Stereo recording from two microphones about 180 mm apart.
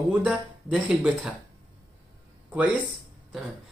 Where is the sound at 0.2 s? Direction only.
5° right (ahead or behind).